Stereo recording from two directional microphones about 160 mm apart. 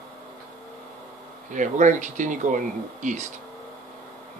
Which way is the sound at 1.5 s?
50° right (ahead or behind).